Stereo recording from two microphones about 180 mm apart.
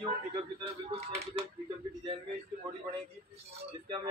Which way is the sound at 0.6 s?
35° right (ahead or behind).